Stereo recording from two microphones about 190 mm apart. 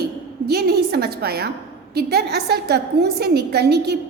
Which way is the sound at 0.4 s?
60° right (ahead or behind).